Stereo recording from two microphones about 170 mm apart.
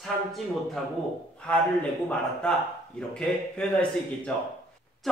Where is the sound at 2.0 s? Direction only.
5° left (ahead or behind).